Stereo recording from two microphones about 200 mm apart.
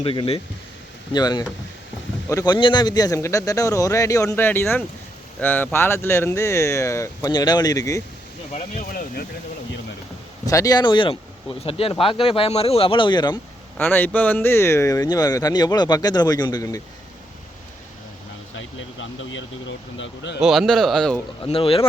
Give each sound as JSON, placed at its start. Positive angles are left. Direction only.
{"t": 0.0, "sound": "speech", "side_deg": 25}
{"t": 8.5, "sound": "speech", "side_deg": 45}
{"t": 10.4, "sound": "speech", "side_deg": 15}
{"t": 13.7, "sound": "speech", "side_deg": 10}
{"t": 18.5, "sound": "a sound", "side_deg": 70}
{"t": 20.4, "sound": "speech", "side_deg": 0}
{"t": 21.4, "sound": "speech", "side_deg": 25}